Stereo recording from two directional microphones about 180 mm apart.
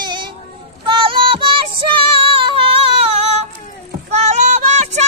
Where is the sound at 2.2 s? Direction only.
30° right (ahead or behind).